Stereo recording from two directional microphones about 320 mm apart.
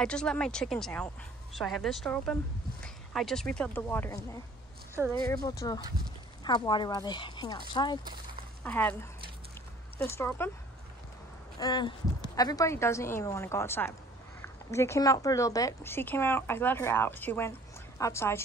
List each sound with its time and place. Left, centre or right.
0.0 s a woman's voice: centre
9.9 s speech: centre
11.6 s speech: centre